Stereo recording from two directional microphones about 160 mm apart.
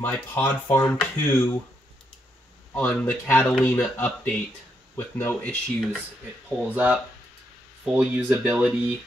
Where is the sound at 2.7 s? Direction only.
10° left (ahead or behind).